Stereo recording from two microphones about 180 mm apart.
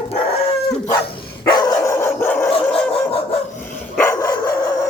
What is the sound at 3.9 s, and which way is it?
Dog, 15° left (ahead or behind).